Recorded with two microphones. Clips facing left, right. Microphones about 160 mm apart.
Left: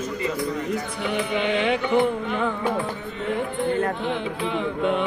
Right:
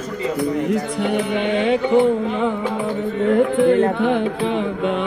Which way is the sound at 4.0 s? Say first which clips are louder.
Right 9 dB; 55° right (ahead or behind).